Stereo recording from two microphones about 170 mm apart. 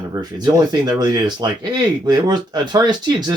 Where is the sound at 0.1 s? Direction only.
20° right (ahead or behind).